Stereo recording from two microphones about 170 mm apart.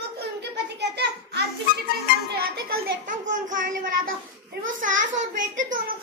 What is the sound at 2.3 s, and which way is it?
A child's voice, 65° right (ahead or behind).